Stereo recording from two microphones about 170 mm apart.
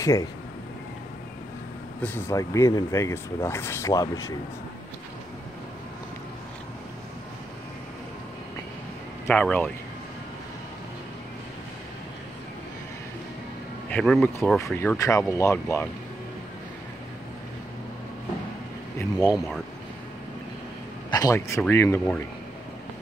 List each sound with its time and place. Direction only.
0.0 s speech: 20° left (ahead or behind)
2.0 s speech: 10° left (ahead or behind)
9.3 s speech: 10° left (ahead or behind)
13.8 s speech: 5° left (ahead or behind)
15.0 s speech: 20° left (ahead or behind)
18.9 s a sound: 20° left (ahead or behind)
19.3 s speech: centre (ahead or behind)
21.1 s speech: 20° left (ahead or behind)